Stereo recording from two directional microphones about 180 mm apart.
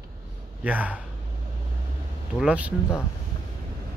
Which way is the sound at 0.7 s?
10° right (ahead or behind).